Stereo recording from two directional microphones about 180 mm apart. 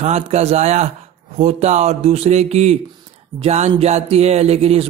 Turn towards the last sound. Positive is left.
turn(degrees=-35)  # may be behind; listen again after turning